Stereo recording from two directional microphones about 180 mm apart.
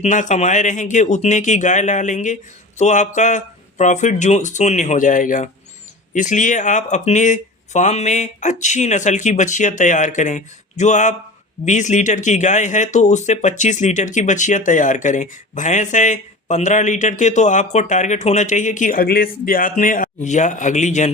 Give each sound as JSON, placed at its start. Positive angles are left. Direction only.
{"t": 0.0, "sound": "speech", "side_deg": 45}